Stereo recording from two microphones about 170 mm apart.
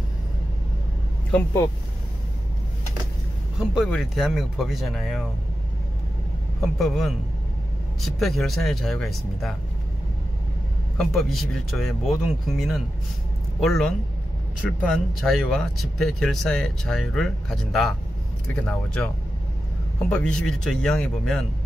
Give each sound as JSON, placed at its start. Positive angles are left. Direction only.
{"t": 1.3, "sound": "speech", "side_deg": 15}
{"t": 3.5, "sound": "speech", "side_deg": -5}
{"t": 6.6, "sound": "speech", "side_deg": 0}
{"t": 11.0, "sound": "a man's voice", "side_deg": 0}